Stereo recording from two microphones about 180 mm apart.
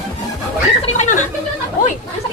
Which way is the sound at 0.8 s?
40° left (ahead or behind).